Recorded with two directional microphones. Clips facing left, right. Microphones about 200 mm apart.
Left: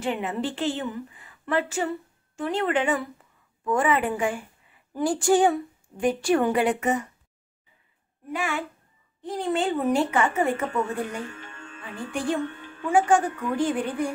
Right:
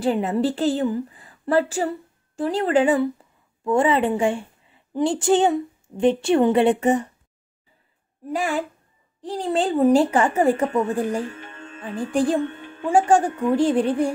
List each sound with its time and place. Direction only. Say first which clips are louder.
0.0 s a woman's voice: right 7 dB; 35° right (ahead or behind)
8.3 s a woman's voice: right 5 dB; 35° right (ahead or behind)
11.3 s music: right 4 dB; 20° right (ahead or behind)
11.8 s a woman's voice: right 8 dB; 35° right (ahead or behind)